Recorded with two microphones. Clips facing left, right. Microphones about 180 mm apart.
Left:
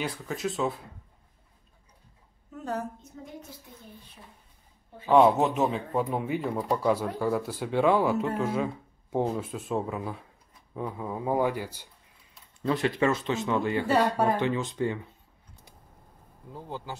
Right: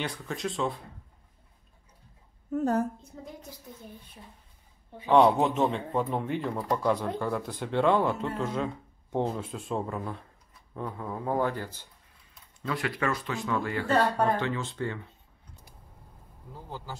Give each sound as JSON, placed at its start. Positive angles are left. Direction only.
{"t": 0.0, "sound": "speech", "side_deg": 5}
{"t": 2.5, "sound": "a woman's voice", "side_deg": -45}
{"t": 5.1, "sound": "speech", "side_deg": 0}
{"t": 12.6, "sound": "speech", "side_deg": 25}
{"t": 13.8, "sound": "speech", "side_deg": 10}